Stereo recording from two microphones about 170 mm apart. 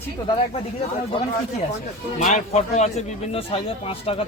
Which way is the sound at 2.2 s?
45° left (ahead or behind).